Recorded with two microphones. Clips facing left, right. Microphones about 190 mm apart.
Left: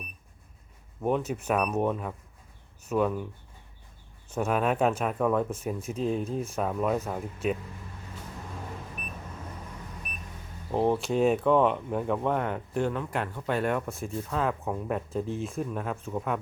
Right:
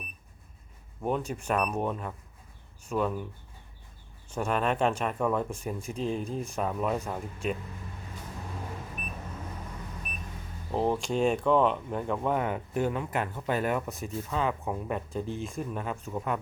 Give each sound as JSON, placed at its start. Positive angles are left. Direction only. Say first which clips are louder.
{"t": 1.0, "sound": "speech", "louder": "left 3 dB", "side_deg": 0}
{"t": 4.4, "sound": "speech", "louder": "left 2 dB", "side_deg": 5}
{"t": 10.7, "sound": "speech", "louder": "left 2 dB", "side_deg": 0}